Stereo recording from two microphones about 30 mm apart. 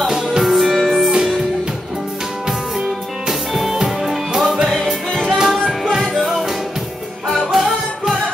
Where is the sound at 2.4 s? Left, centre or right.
Centre.